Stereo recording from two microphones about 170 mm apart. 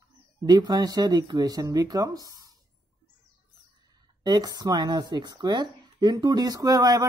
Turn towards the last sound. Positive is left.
turn(degrees=-20)  # may be behind; listen again after turning